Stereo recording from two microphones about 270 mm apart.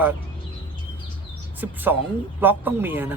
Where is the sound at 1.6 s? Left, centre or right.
Centre.